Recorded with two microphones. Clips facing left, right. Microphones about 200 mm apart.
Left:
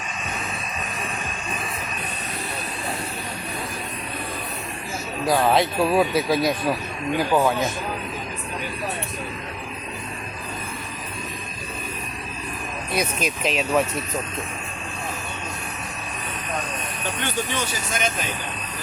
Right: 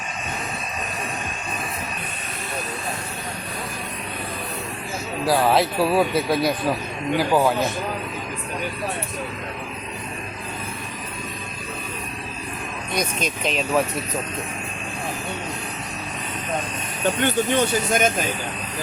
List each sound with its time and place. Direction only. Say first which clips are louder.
5.2 s speech: right 1 dB; 5° right (ahead or behind)
12.9 s speech: left 1 dB; 5° left (ahead or behind)
17.2 s speech: right 7 dB; 55° right (ahead or behind)